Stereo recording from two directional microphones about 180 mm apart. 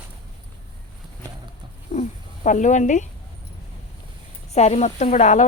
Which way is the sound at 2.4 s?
45° left (ahead or behind).